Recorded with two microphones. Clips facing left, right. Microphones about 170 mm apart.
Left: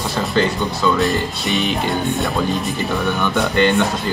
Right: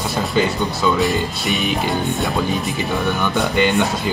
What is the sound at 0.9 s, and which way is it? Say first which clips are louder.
Speech: even; centre (ahead or behind).